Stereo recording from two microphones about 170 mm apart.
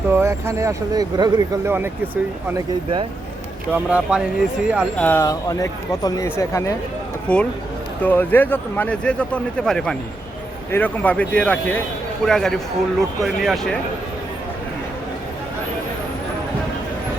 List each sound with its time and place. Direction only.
0.1 s speech: 15° right (ahead or behind)
3.7 s speech: 5° right (ahead or behind)
4.9 s speech: 10° left (ahead or behind)
7.3 s speech: 5° left (ahead or behind)